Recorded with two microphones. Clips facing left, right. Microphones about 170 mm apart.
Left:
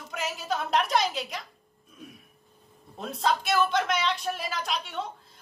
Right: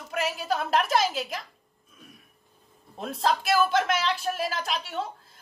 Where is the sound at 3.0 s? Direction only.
Centre (ahead or behind).